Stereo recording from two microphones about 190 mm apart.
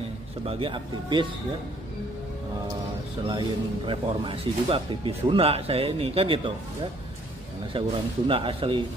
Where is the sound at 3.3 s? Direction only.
25° right (ahead or behind).